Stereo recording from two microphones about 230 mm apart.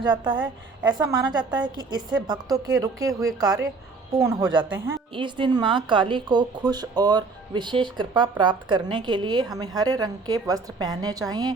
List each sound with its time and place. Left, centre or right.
0.0 s a woman's voice: centre